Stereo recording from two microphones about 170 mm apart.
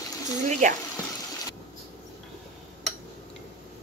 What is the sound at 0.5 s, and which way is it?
Speech, 45° right (ahead or behind).